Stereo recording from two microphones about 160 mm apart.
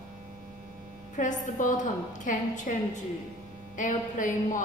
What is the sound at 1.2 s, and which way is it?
A woman's voice, 55° left (ahead or behind).